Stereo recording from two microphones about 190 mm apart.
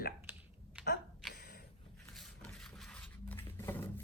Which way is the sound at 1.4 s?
60° left (ahead or behind).